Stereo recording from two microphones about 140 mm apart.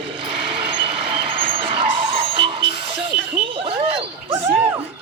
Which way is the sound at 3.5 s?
40° right (ahead or behind).